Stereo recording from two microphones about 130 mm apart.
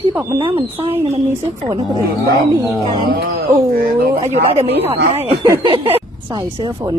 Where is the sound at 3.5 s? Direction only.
20° right (ahead or behind).